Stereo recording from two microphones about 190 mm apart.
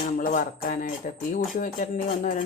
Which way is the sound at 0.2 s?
50° left (ahead or behind).